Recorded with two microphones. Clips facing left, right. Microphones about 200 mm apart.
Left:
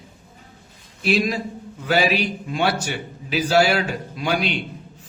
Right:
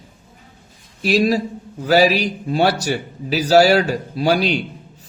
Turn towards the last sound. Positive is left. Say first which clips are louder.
# right 6 dB
turn(degrees=-35)  # may be behind; listen again after turning